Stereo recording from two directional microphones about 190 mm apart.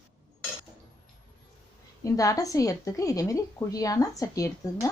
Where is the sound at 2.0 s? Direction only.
15° left (ahead or behind).